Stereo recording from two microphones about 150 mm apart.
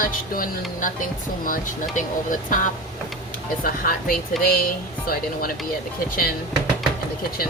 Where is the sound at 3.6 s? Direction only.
70° left (ahead or behind).